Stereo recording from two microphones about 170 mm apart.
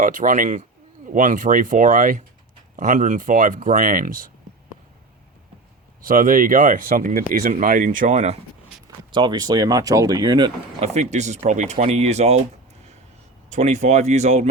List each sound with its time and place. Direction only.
0.0 s speech: 50° right (ahead or behind)
6.0 s speech: 55° right (ahead or behind)
9.1 s speech: 25° right (ahead or behind)
10.8 s speech: 40° right (ahead or behind)
13.5 s speech: 45° right (ahead or behind)